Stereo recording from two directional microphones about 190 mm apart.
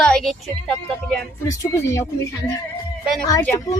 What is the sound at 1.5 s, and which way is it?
Speech, 15° left (ahead or behind).